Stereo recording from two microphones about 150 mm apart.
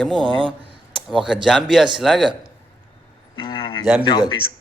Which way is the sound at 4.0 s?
30° left (ahead or behind).